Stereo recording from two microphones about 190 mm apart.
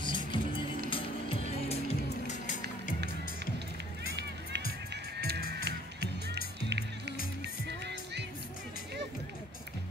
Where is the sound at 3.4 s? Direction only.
60° right (ahead or behind).